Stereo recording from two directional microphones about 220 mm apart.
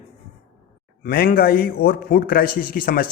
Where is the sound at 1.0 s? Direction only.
40° left (ahead or behind).